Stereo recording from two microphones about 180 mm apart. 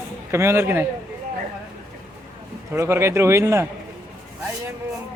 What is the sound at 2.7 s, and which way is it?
Speech, 15° right (ahead or behind).